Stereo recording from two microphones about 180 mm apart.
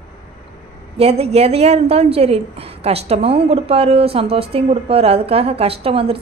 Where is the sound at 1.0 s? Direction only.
35° right (ahead or behind).